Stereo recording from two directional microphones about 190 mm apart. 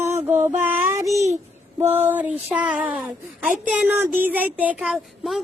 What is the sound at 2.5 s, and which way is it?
Speech, 5° right (ahead or behind).